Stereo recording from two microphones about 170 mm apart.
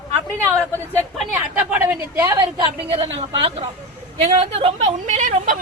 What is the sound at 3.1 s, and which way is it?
A woman's voice, 35° right (ahead or behind).